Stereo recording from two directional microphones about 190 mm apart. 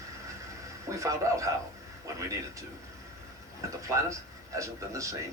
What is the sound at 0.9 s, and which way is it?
Speech, 15° right (ahead or behind).